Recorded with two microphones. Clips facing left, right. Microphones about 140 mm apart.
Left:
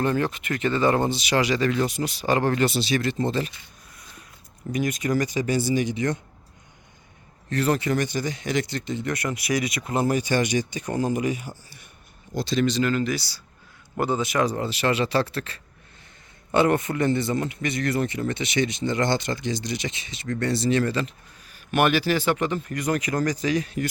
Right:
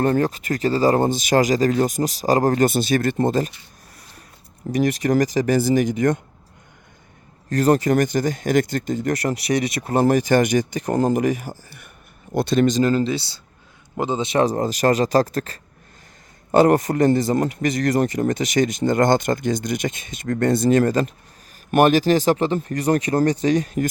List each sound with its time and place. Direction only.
0.0 s speech: 40° right (ahead or behind)
4.7 s speech: 40° right (ahead or behind)
7.5 s speech: 40° right (ahead or behind)